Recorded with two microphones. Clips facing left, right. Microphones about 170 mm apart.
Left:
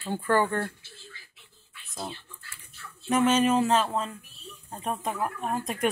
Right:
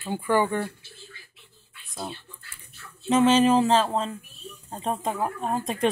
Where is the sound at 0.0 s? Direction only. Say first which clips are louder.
Right 1 dB; 10° right (ahead or behind).